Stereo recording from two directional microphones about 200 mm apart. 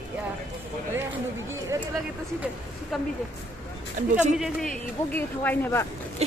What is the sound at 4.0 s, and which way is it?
Speech, 40° right (ahead or behind).